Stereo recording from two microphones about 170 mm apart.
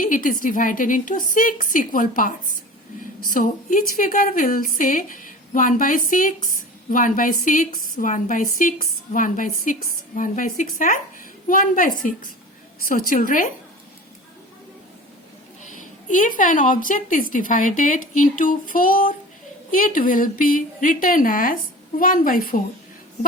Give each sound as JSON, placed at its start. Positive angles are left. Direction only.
{"t": 0.0, "sound": "a woman's voice", "side_deg": 55}
{"t": 16.0, "sound": "a woman's voice", "side_deg": 50}